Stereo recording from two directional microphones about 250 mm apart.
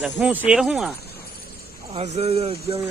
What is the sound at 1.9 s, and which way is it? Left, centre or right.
Speech, right.